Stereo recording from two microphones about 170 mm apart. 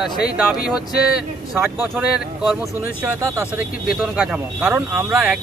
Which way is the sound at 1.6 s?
10° right (ahead or behind).